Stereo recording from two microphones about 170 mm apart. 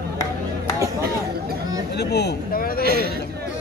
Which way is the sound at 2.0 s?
75° left (ahead or behind).